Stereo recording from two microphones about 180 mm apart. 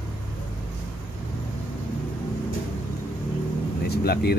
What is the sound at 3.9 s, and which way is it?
Speech, 60° left (ahead or behind).